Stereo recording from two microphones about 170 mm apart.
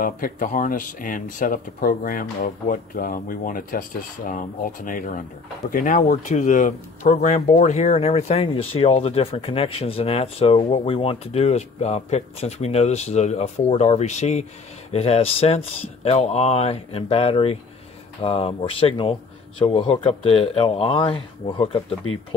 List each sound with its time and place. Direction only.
0.0 s speech: 55° left (ahead or behind); by 21.9 s 35° left (ahead or behind)